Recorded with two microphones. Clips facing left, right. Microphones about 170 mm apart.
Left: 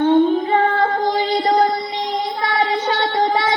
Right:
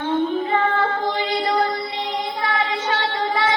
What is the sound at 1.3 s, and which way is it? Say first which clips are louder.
Music: left 4 dB; 35° left (ahead or behind).